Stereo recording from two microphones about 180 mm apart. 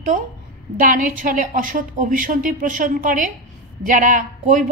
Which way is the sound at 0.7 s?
50° right (ahead or behind).